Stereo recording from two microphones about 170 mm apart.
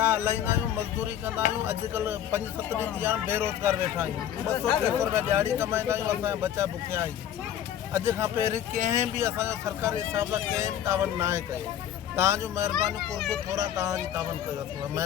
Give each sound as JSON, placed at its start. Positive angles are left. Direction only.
{"t": 0.0, "sound": "speech", "side_deg": -10}
{"t": 12.7, "sound": "a child's voice", "side_deg": 0}
{"t": 13.6, "sound": "speech", "side_deg": -20}